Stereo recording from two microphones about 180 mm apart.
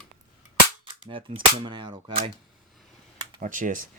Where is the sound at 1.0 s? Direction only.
30° right (ahead or behind).